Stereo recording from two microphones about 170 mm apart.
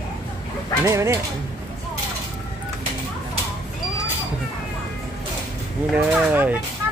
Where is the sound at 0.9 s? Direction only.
20° right (ahead or behind).